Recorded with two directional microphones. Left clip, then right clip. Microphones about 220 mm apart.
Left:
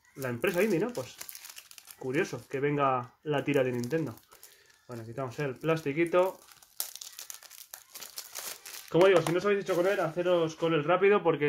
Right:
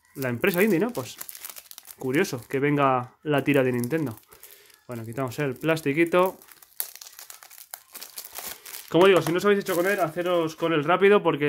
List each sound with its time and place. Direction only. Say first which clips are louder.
0.2 s speech: right 5 dB; 45° right (ahead or behind)
4.8 s speech: right 6 dB; 50° right (ahead or behind)
8.8 s speech: right 4 dB; 50° right (ahead or behind)